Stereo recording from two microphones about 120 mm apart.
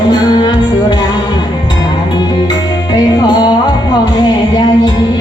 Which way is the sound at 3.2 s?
35° left (ahead or behind).